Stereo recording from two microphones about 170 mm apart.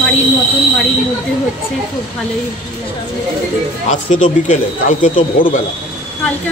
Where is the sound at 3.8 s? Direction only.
45° left (ahead or behind).